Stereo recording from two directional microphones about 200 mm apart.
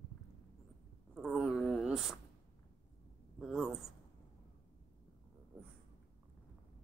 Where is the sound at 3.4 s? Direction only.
Centre (ahead or behind).